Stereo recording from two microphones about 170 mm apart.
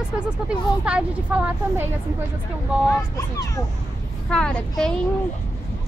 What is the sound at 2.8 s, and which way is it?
Speech, 20° left (ahead or behind).